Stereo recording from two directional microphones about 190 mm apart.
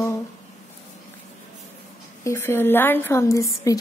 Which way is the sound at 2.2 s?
15° left (ahead or behind).